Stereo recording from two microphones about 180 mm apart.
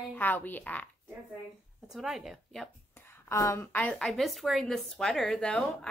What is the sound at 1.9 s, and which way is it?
Speech, 5° right (ahead or behind).